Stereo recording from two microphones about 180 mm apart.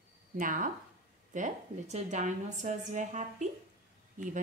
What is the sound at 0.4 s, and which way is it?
A woman's voice, 45° right (ahead or behind).